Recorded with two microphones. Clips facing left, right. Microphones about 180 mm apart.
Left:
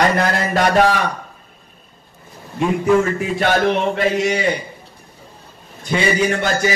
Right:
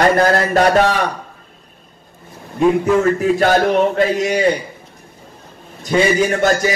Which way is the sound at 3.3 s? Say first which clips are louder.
Even; 40° right (ahead or behind).